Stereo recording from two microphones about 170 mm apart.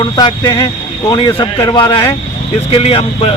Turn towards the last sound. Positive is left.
turn(degrees=35)  # may be behind; listen again after turning